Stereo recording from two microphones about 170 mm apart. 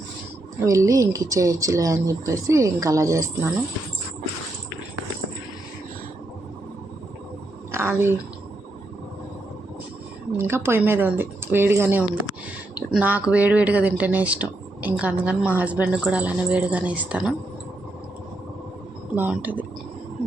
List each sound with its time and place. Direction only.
0.6 s speech: 20° right (ahead or behind)
7.7 s a woman's voice: 15° right (ahead or behind)
10.3 s speech: 15° right (ahead or behind)
19.1 s speech: 10° right (ahead or behind)